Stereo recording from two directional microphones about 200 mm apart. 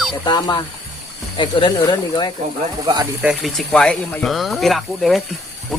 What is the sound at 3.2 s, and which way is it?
Speech, centre (ahead or behind).